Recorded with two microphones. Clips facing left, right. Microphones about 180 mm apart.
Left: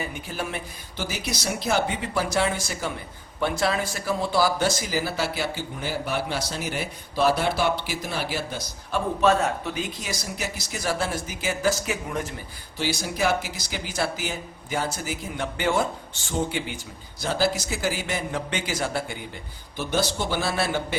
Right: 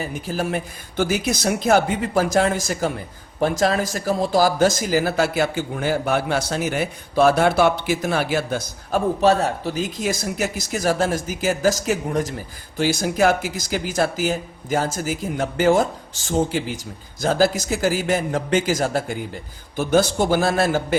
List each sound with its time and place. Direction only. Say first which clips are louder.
0.0 s speech: right 6 dB; 40° right (ahead or behind)
9.2 s speech: right 1 dB; 35° right (ahead or behind)